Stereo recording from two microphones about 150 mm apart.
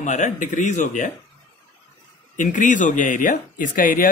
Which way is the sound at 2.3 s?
60° left (ahead or behind).